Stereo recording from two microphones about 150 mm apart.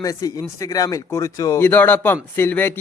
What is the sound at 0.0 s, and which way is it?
A man's voice, 25° left (ahead or behind).